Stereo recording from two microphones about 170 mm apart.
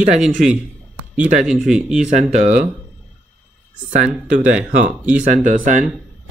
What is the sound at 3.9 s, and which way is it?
Speech, 45° right (ahead or behind).